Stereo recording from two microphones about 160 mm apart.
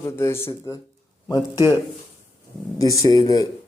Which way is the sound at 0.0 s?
15° left (ahead or behind).